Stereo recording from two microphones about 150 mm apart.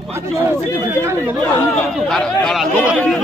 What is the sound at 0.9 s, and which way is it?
Speech, 15° right (ahead or behind).